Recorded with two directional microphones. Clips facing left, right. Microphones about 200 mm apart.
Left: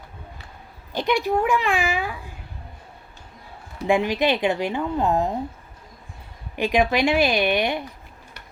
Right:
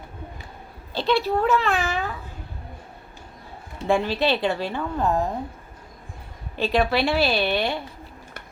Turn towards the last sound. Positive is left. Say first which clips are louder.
# left 2 dB
turn(degrees=15)  # may be behind; listen again after turning